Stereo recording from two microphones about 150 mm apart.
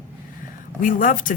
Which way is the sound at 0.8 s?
65° left (ahead or behind).